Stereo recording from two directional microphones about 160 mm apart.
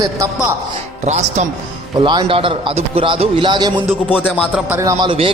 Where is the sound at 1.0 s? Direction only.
45° right (ahead or behind).